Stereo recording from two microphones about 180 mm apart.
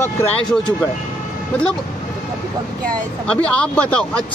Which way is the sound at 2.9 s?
5° left (ahead or behind).